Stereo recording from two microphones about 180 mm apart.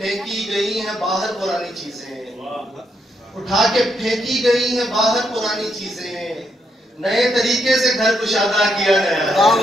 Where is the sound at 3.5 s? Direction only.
Centre (ahead or behind).